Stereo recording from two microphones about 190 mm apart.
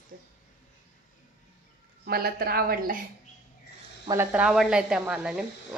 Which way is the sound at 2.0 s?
55° right (ahead or behind).